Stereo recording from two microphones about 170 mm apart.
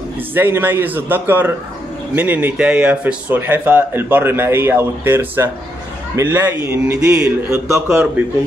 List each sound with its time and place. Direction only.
0.3 s speech: 10° right (ahead or behind)
7.5 s speech: 15° right (ahead or behind)